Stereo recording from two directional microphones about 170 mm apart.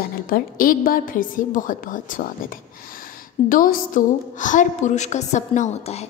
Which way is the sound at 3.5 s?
55° left (ahead or behind).